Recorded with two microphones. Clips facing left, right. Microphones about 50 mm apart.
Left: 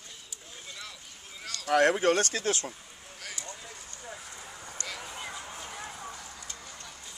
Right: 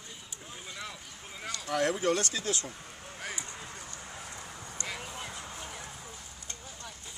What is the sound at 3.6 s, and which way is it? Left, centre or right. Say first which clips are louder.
Vehicle: right 2 dB; right.